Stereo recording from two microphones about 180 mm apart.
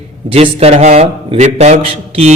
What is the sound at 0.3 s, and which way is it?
Speech, 35° right (ahead or behind).